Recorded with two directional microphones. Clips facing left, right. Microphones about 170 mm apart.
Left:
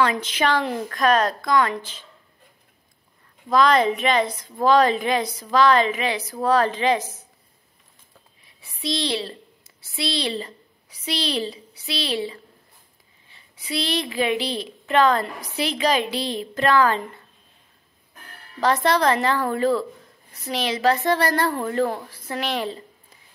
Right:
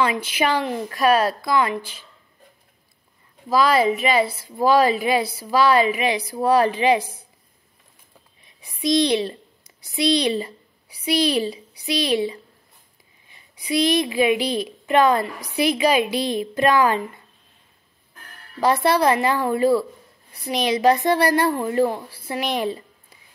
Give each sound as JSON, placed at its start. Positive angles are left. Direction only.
{"t": 0.0, "sound": "a woman's voice", "side_deg": -10}
{"t": 3.4, "sound": "a woman's voice", "side_deg": -5}
{"t": 8.5, "sound": "a woman's voice", "side_deg": -15}
{"t": 18.6, "sound": "a woman's voice", "side_deg": -10}